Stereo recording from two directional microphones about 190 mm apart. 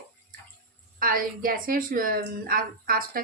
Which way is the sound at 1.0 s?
50° right (ahead or behind).